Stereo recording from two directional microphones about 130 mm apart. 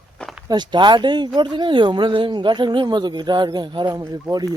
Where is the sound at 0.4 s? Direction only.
35° right (ahead or behind).